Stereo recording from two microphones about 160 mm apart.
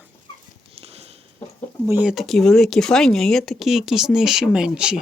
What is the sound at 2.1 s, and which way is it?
Speech, centre (ahead or behind).